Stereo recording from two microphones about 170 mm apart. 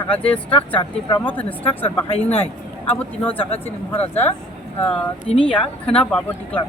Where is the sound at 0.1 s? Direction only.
5° left (ahead or behind).